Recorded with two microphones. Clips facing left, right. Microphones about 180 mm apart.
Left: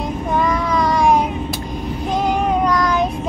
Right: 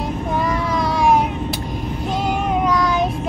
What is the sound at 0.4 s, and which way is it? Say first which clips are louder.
Child singing: left 3 dB; 5° right (ahead or behind).